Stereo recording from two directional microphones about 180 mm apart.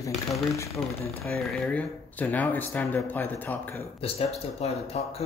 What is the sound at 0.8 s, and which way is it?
Speech, 15° left (ahead or behind).